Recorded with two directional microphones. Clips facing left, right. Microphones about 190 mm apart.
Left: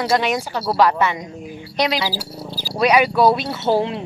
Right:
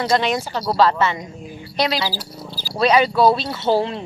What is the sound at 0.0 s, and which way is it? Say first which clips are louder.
Speech: even; 10° left (ahead or behind).